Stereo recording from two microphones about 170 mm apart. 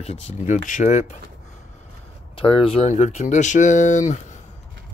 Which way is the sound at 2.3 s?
30° left (ahead or behind).